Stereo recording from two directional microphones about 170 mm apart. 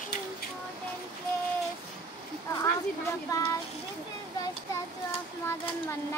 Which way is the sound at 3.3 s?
20° left (ahead or behind).